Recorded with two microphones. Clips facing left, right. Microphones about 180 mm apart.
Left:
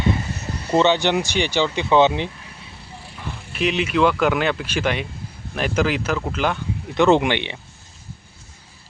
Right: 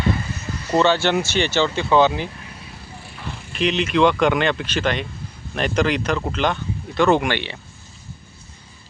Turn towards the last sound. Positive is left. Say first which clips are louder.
# left 2 dB
turn(degrees=20)  # may be behind; listen again after turning